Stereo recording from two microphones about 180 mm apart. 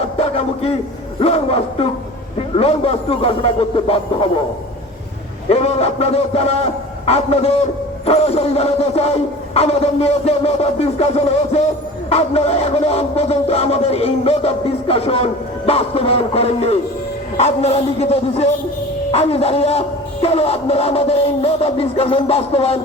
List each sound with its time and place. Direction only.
0.0 s a sound: 35° left (ahead or behind)
1.2 s speech: 35° left (ahead or behind)
5.5 s speech: 35° left (ahead or behind)